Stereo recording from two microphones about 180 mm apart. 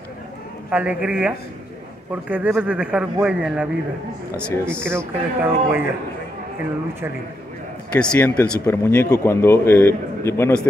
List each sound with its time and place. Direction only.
0.7 s speech: 5° right (ahead or behind)
7.9 s speech: 5° left (ahead or behind)